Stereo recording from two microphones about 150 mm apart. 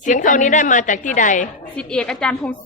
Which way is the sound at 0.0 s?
60° left (ahead or behind).